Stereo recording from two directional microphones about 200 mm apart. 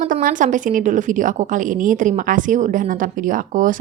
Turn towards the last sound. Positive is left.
turn(degrees=-40)  # may be behind; listen again after turning